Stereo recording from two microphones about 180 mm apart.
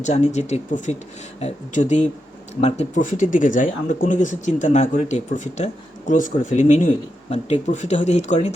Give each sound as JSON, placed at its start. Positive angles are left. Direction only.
{"t": 0.0, "sound": "speech", "side_deg": 40}